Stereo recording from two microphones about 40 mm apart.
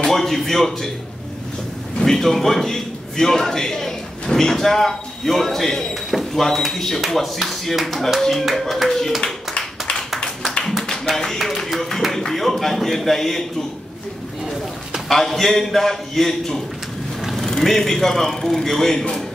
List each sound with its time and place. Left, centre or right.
0.0 s a man's voice: centre
2.0 s a man's voice: centre
8.5 s speech: centre
8.8 s a man's voice: centre
10.1 s a sound: centre
12.4 s a man's voice: centre
15.0 s a man's voice: centre